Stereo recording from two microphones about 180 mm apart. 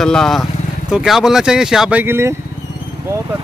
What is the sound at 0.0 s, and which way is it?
Speech, 5° left (ahead or behind).